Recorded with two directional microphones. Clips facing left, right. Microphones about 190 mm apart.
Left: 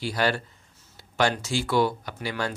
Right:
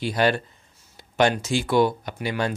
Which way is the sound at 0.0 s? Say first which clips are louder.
Right 4 dB; 20° right (ahead or behind).